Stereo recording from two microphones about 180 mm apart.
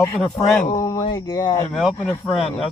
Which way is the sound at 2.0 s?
5° left (ahead or behind).